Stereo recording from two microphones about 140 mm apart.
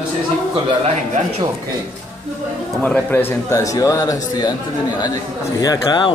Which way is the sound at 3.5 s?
25° left (ahead or behind).